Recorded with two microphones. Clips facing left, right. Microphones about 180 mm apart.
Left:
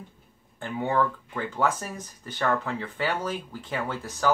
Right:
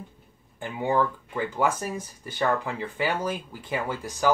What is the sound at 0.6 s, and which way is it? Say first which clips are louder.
Speech: right 1 dB; 15° right (ahead or behind).